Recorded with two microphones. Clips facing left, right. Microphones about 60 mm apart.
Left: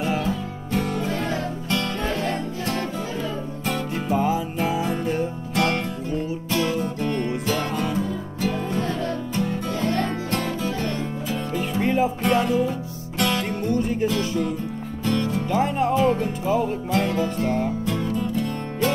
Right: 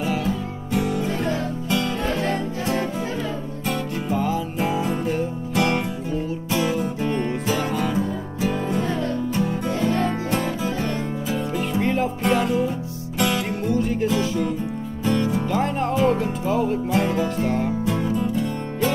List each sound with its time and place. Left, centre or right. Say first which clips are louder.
0.7 s music: right 1 dB; centre
3.6 s music: right 1 dB; centre
4.1 s music: left 2 dB; centre
4.6 s music: right 1 dB; centre
11.5 s music: left 1 dB; centre
15.5 s music: left 5 dB; centre
16.9 s music: left 2 dB; centre